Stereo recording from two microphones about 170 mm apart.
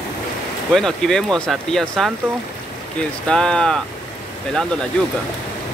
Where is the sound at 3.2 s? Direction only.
5° left (ahead or behind).